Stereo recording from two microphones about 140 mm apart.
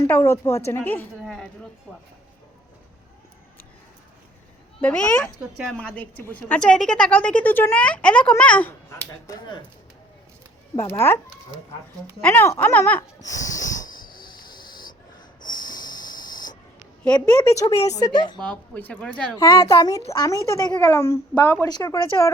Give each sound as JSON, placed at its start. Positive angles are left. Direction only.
{"t": 0.0, "sound": "a child's voice", "side_deg": 20}
{"t": 1.2, "sound": "a sound", "side_deg": 0}
{"t": 4.8, "sound": "a woman's voice", "side_deg": 10}
{"t": 8.9, "sound": "a child's voice", "side_deg": 20}
{"t": 10.8, "sound": "a woman's voice", "side_deg": 20}
{"t": 12.2, "sound": "a woman's voice", "side_deg": 15}
{"t": 13.2, "sound": "a child's voice", "side_deg": 25}
{"t": 13.8, "sound": "a sound", "side_deg": 90}
{"t": 15.4, "sound": "snort", "side_deg": 30}
{"t": 17.0, "sound": "a woman's voice", "side_deg": 10}
{"t": 18.3, "sound": "a woman's voice", "side_deg": 10}
{"t": 19.4, "sound": "a child's voice", "side_deg": 25}
{"t": 21.7, "sound": "a child's voice", "side_deg": 30}